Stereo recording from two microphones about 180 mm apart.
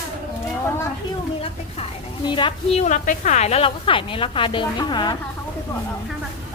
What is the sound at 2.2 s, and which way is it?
A woman's voice, 25° left (ahead or behind).